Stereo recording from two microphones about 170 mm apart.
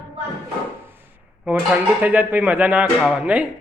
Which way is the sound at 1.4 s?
10° right (ahead or behind).